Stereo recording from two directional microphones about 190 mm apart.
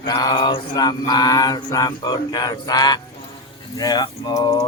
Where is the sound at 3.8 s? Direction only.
20° left (ahead or behind).